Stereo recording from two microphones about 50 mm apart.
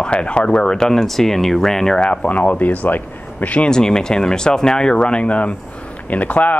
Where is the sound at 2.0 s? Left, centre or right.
Left.